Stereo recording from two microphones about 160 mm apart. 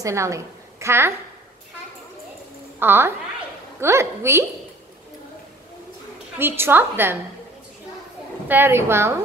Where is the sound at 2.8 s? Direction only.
15° right (ahead or behind).